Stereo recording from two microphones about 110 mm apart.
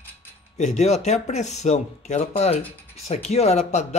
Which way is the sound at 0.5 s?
90° left.